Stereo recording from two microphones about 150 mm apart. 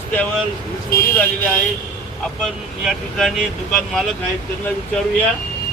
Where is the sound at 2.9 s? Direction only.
Centre (ahead or behind).